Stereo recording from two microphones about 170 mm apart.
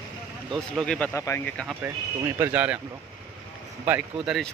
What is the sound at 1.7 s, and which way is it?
Speech, 15° right (ahead or behind).